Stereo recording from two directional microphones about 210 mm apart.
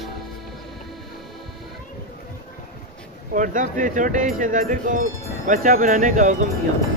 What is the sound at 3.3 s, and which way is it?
Speech, 40° right (ahead or behind).